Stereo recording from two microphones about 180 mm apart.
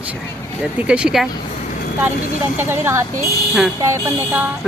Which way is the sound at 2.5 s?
15° right (ahead or behind).